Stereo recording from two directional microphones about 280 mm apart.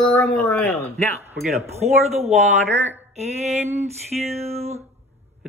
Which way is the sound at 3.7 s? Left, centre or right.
Right.